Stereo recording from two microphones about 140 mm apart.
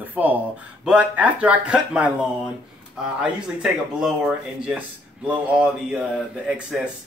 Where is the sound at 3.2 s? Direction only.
5° right (ahead or behind).